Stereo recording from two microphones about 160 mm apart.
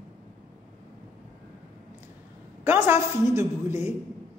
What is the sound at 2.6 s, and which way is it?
A woman's voice, 15° right (ahead or behind).